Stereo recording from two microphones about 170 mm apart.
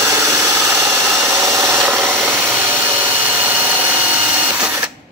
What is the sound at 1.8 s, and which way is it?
Rub, centre (ahead or behind).